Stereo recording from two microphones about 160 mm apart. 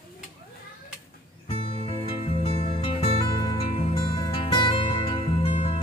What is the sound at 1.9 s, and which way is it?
Music, 35° left (ahead or behind).